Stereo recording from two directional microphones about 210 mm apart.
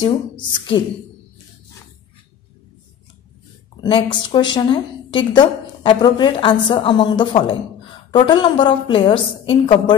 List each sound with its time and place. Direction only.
0.7 s a woman's voice: 20° left (ahead or behind)
3.8 s a woman's voice: 25° left (ahead or behind)